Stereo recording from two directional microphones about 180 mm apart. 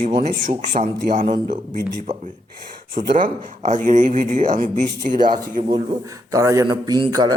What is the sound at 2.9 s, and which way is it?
Speech, 45° right (ahead or behind).